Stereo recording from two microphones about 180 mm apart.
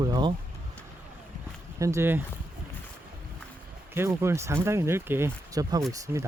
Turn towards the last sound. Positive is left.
turn(degrees=-15)  # may be behind; listen again after turning